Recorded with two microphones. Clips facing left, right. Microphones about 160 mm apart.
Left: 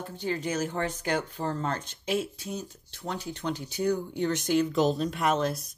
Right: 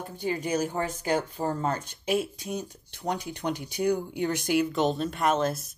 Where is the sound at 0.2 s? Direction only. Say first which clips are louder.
Right 2 dB; 10° right (ahead or behind).